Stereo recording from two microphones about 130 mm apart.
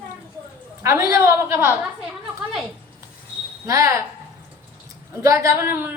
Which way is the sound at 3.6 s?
25° right (ahead or behind).